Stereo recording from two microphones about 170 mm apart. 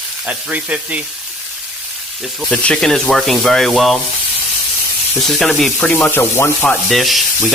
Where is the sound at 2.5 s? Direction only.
5° left (ahead or behind).